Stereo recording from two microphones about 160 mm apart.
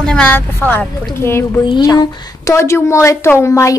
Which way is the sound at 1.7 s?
25° left (ahead or behind).